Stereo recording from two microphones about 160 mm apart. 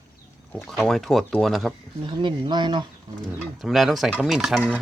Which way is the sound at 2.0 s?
30° right (ahead or behind).